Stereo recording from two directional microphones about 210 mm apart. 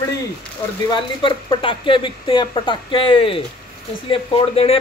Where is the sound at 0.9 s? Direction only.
25° left (ahead or behind).